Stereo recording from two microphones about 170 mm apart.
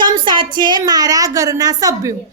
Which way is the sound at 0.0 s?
25° right (ahead or behind).